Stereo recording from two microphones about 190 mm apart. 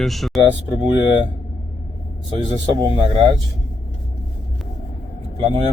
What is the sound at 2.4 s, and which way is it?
Speech, 25° left (ahead or behind).